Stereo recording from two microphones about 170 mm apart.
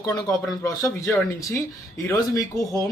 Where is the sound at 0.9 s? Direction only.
15° left (ahead or behind).